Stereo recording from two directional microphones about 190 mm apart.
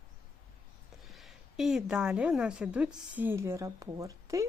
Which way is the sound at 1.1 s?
Centre (ahead or behind).